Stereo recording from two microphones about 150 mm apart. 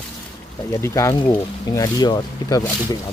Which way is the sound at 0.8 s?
20° left (ahead or behind).